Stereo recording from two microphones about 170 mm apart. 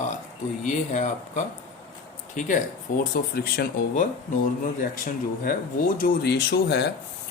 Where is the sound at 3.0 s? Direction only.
60° left (ahead or behind).